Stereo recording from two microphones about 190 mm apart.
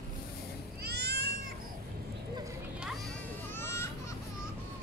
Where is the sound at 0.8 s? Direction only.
60° right (ahead or behind).